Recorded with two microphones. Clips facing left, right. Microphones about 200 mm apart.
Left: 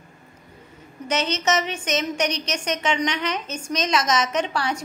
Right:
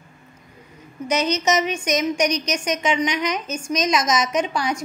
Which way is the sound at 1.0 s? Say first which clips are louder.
Right 3 dB; 10° right (ahead or behind).